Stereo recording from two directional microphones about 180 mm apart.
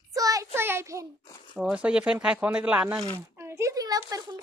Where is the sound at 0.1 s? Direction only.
20° right (ahead or behind).